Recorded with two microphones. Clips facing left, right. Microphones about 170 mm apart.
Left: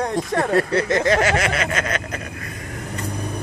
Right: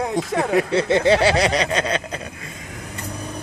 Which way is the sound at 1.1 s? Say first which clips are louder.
Right 2 dB; 30° right (ahead or behind).